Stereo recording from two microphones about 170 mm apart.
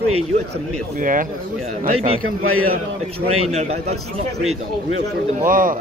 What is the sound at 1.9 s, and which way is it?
Speech, 35° right (ahead or behind).